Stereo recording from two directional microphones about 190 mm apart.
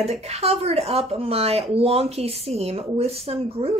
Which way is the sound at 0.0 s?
35° right (ahead or behind).